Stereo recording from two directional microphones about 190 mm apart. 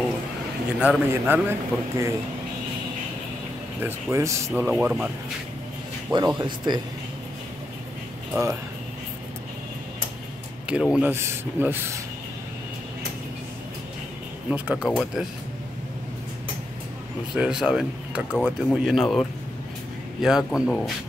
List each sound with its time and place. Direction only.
0.7 s speech: 5° right (ahead or behind)
3.8 s speech: 15° right (ahead or behind)
6.1 s speech: 20° right (ahead or behind)
10.7 s speech: 5° right (ahead or behind)
14.5 s speech: 5° right (ahead or behind)
14.9 s speech: 5° left (ahead or behind)
17.3 s speech: 5° right (ahead or behind)